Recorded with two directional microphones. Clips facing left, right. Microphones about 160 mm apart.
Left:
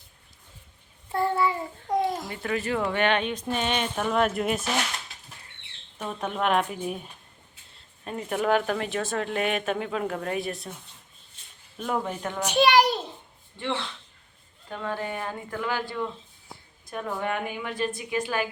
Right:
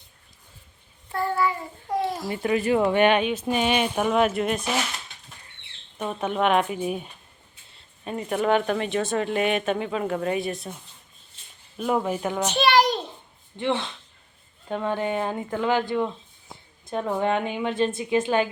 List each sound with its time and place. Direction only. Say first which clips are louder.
1.1 s child singing: even; 25° left (ahead or behind)
1.9 s a sound: left 1 dB; 5° right (ahead or behind)
2.2 s speech: right 6 dB; 20° right (ahead or behind)
4.2 s speech: even; centre (ahead or behind)
5.1 s bird flight: even; centre (ahead or behind)
6.0 s speech: right 4 dB; 5° right (ahead or behind)
11.8 s speech: right 5 dB; 10° right (ahead or behind)
12.4 s a child's voice: left 1 dB; 10° left (ahead or behind)
13.6 s a woman's voice: right 5 dB; 20° right (ahead or behind)